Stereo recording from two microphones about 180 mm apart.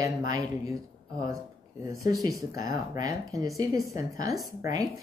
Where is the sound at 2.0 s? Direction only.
20° right (ahead or behind).